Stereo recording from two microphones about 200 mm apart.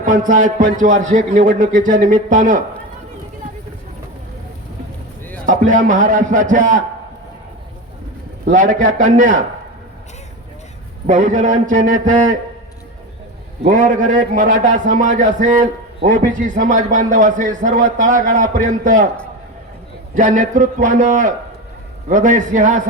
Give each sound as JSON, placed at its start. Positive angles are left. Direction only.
{"t": 0.0, "sound": "a man's voice", "side_deg": -40}
{"t": 5.5, "sound": "a man's voice", "side_deg": -40}
{"t": 8.5, "sound": "a man's voice", "side_deg": -40}
{"t": 11.0, "sound": "a man's voice", "side_deg": -40}
{"t": 13.7, "sound": "a man's voice", "side_deg": -40}
{"t": 20.1, "sound": "a man's voice", "side_deg": -40}